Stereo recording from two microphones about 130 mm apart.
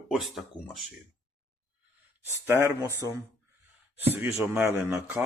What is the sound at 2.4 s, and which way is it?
Speech, 15° right (ahead or behind).